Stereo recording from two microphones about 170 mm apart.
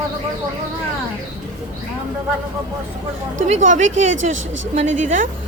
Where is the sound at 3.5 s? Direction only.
45° right (ahead or behind).